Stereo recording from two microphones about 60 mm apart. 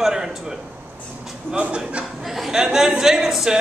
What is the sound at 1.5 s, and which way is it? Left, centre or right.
Speech, centre.